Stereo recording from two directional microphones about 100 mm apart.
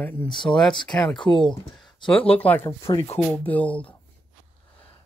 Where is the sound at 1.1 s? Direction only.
55° left (ahead or behind).